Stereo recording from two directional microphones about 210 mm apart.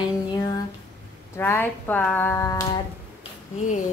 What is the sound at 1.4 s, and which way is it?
Speech, 10° left (ahead or behind).